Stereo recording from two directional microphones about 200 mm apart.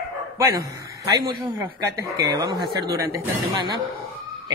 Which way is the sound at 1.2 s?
15° right (ahead or behind).